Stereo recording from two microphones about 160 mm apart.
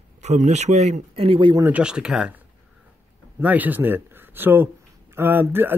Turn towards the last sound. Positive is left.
turn(degrees=-15)  # may be behind; listen again after turning